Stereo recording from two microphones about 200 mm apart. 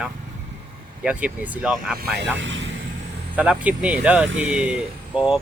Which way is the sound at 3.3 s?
5° right (ahead or behind).